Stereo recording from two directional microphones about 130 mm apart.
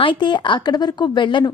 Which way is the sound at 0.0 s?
40° left (ahead or behind).